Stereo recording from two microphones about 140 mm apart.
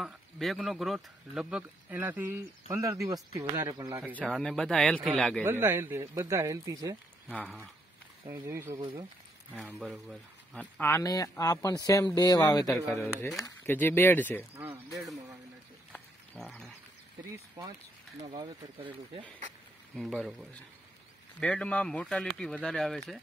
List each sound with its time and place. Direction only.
0.0 s speech: centre (ahead or behind); by 3.9 s 25° right (ahead or behind)
4.1 s speech: 5° left (ahead or behind)
5.4 s speech: 15° right (ahead or behind)
7.4 s speech: centre (ahead or behind)
8.3 s speech: 20° right (ahead or behind)
9.6 s speech: 5° right (ahead or behind)
10.8 s speech: 20° left (ahead or behind)
12.7 s speech: centre (ahead or behind)
13.4 s speech: 15° left (ahead or behind)
16.3 s speech: centre (ahead or behind)
18.6 s speech: 35° right (ahead or behind)
20.0 s speech: centre (ahead or behind)